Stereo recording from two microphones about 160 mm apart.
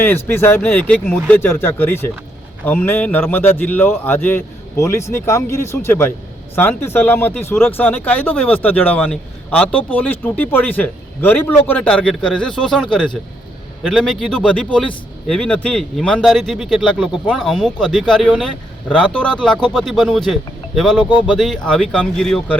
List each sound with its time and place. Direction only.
0.0 s speech: 15° left (ahead or behind)
21.0 s speech: 25° left (ahead or behind)
21.2 s speech: centre (ahead or behind)